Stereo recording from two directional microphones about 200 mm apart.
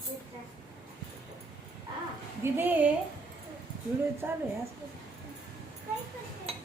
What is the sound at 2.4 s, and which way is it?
Speech, 10° right (ahead or behind).